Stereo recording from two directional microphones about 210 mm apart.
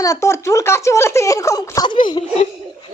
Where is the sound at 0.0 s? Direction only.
15° left (ahead or behind).